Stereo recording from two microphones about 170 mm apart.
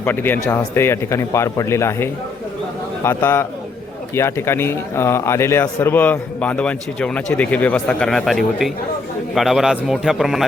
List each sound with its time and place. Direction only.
0.0 s a man's voice: 10° left (ahead or behind)